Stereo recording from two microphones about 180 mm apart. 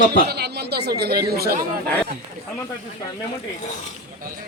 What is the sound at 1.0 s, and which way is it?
Speech, 60° right (ahead or behind).